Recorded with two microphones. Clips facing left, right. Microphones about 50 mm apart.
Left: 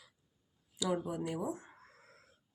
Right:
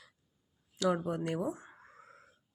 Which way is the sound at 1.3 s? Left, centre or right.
Right.